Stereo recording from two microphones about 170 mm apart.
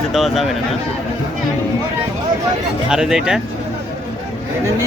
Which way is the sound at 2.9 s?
5° right (ahead or behind).